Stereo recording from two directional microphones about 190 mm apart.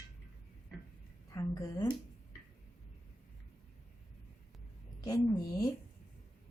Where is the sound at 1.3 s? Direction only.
20° left (ahead or behind).